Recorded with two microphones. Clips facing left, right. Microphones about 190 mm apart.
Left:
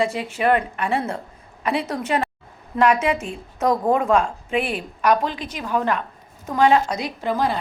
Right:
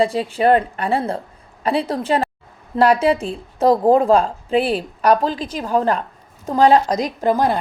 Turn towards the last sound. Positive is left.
turn(degrees=-45)  # may be behind; listen again after turning